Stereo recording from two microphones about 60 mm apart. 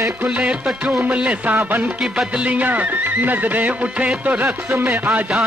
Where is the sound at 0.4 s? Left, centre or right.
Centre.